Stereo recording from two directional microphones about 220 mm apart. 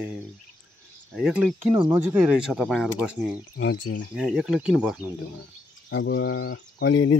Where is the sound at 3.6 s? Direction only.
45° left (ahead or behind).